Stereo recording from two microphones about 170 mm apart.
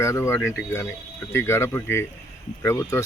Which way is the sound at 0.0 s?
15° left (ahead or behind).